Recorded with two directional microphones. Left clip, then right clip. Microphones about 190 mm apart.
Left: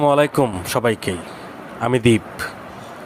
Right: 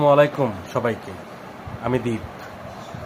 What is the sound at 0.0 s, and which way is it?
Speech, 55° left (ahead or behind).